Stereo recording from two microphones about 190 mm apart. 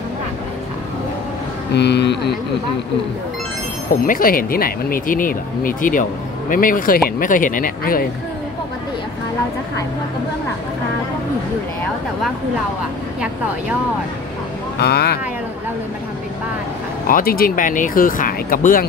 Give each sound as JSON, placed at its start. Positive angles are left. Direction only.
{"t": 1.7, "sound": "speech", "side_deg": 60}
{"t": 3.9, "sound": "speech", "side_deg": 45}
{"t": 14.8, "sound": "speech", "side_deg": 55}
{"t": 17.1, "sound": "speech", "side_deg": 50}